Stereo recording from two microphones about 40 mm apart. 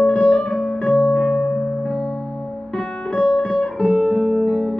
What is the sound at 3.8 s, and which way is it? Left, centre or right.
Guitar, centre.